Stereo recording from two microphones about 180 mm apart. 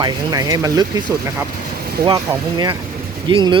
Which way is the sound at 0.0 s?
20° right (ahead or behind).